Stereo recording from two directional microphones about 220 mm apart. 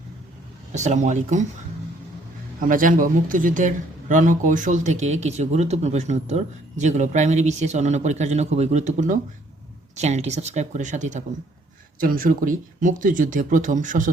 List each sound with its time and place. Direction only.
0.7 s speech: 35° right (ahead or behind)
2.6 s speech: 40° right (ahead or behind)